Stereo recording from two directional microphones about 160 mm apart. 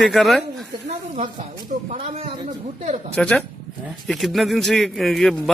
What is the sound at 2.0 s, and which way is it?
Speech, 40° right (ahead or behind).